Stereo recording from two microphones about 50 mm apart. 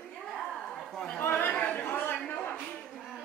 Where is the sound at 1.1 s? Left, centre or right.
Left.